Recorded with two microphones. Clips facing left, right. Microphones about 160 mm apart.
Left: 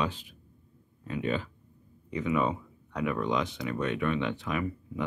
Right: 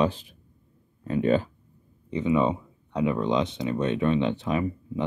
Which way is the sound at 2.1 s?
25° right (ahead or behind).